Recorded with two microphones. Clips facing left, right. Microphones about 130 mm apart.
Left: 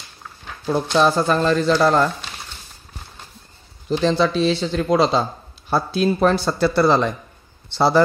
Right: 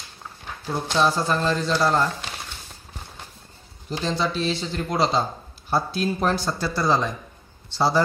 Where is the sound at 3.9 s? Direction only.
70° left (ahead or behind); by 5.2 s 90° left.